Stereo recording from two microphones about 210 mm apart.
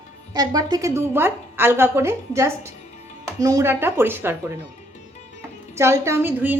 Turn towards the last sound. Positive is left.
turn(degrees=-10)  # may be behind; listen again after turning